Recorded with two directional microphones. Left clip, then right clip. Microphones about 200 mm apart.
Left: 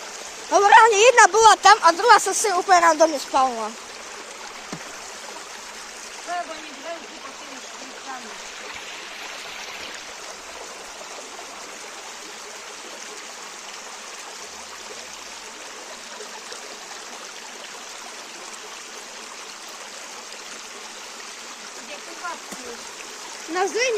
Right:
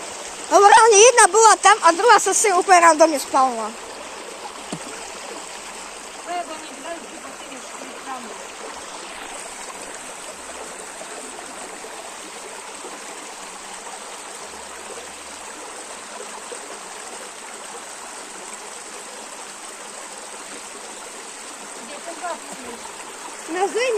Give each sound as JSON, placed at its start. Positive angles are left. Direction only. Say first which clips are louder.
{"t": 0.5, "sound": "speech", "louder": "right 2 dB", "side_deg": 0}
{"t": 23.5, "sound": "splash", "louder": "right 1 dB", "side_deg": 35}